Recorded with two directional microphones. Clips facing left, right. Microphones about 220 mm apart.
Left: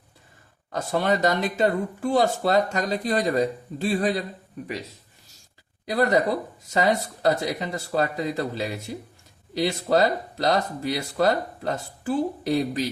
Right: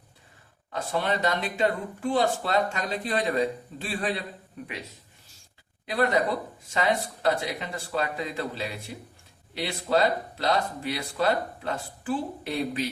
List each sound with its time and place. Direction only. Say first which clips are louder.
0.7 s speech: left 4 dB; 45° left (ahead or behind)
5.8 s speech: left 3 dB; 40° left (ahead or behind)